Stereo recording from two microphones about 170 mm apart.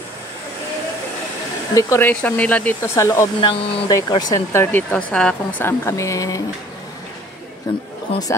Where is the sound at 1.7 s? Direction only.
20° left (ahead or behind).